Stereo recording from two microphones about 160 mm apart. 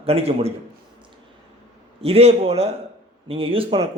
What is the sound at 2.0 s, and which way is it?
Speech, 40° right (ahead or behind).